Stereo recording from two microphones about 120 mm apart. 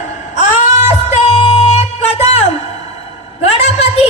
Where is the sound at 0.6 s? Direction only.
70° left (ahead or behind).